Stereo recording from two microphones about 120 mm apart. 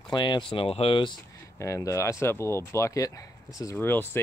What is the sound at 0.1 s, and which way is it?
Speech, 40° left (ahead or behind).